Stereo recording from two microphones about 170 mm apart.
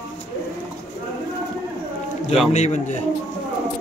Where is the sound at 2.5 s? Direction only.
45° left (ahead or behind).